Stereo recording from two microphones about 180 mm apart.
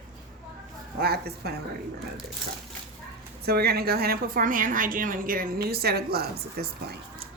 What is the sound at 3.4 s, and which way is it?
A woman's voice, 60° right (ahead or behind).